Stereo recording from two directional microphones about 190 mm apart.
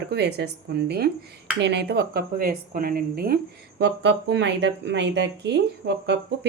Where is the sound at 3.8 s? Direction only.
65° right (ahead or behind).